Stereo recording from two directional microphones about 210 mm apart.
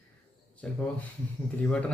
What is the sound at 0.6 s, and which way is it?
A man's voice, 5° left (ahead or behind).